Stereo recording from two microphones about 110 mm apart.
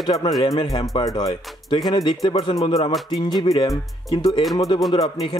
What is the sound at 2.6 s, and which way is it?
Music, 55° left (ahead or behind).